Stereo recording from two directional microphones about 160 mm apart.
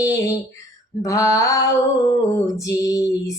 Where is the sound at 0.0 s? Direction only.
20° left (ahead or behind).